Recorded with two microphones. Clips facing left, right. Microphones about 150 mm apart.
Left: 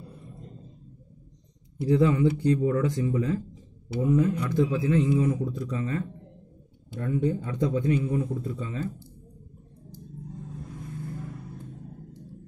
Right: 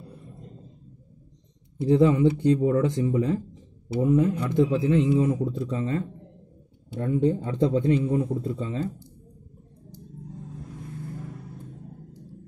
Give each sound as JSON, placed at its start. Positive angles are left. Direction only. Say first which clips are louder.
{"t": 1.8, "sound": "a man's voice", "louder": "right 3 dB", "side_deg": -20}